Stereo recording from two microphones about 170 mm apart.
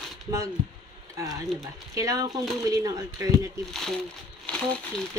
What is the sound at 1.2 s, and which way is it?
Speech, 20° right (ahead or behind).